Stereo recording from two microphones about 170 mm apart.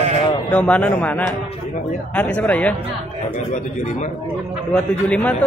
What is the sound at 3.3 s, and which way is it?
Speech, 45° left (ahead or behind).